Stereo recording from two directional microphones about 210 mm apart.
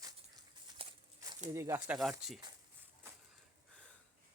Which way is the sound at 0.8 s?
30° right (ahead or behind).